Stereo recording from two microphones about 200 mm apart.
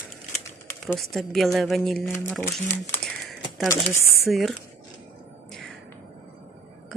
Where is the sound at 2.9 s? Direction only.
5° left (ahead or behind).